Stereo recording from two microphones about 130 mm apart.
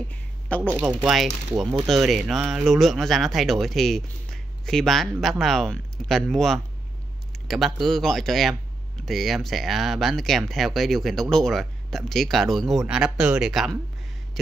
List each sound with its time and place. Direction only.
0.5 s speech: 10° left (ahead or behind)
1.0 s speech: centre (ahead or behind)